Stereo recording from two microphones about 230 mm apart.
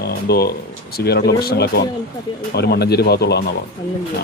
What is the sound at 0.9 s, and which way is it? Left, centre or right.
Speech, left.